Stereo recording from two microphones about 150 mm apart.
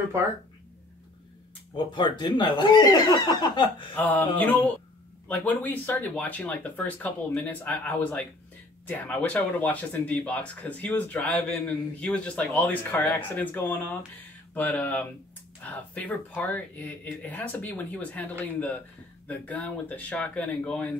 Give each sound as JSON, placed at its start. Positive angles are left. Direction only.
{"t": 1.9, "sound": "speech", "side_deg": 30}
{"t": 3.9, "sound": "speech", "side_deg": 10}
{"t": 19.2, "sound": "speech", "side_deg": 10}